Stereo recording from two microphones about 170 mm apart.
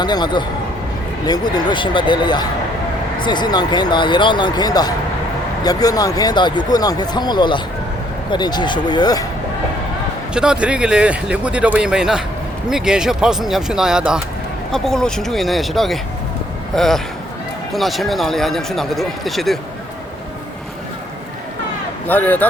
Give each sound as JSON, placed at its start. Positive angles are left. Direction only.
{"t": 0.0, "sound": "speech", "side_deg": 25}
{"t": 10.3, "sound": "speech", "side_deg": -5}
{"t": 22.0, "sound": "speech", "side_deg": 10}